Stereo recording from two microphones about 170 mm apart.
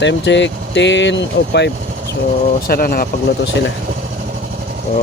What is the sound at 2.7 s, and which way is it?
Speech, 60° left (ahead or behind).